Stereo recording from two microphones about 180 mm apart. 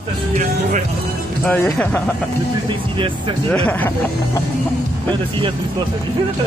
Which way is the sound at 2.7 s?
30° right (ahead or behind).